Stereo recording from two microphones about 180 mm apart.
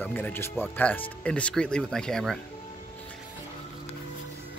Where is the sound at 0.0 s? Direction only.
10° left (ahead or behind).